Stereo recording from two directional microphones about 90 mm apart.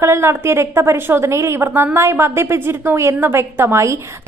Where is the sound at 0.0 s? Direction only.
30° right (ahead or behind).